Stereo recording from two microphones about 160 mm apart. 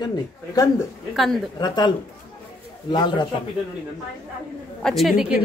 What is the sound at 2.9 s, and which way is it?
Speech, 25° left (ahead or behind).